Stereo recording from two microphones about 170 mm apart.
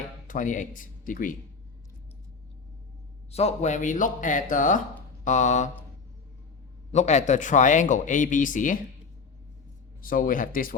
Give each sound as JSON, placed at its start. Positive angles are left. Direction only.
{"t": 0.3, "sound": "speech", "side_deg": 50}
{"t": 3.3, "sound": "speech", "side_deg": 40}
{"t": 6.9, "sound": "speech", "side_deg": 40}
{"t": 10.0, "sound": "speech", "side_deg": 55}